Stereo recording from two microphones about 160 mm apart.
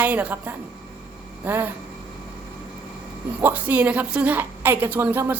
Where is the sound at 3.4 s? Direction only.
10° right (ahead or behind).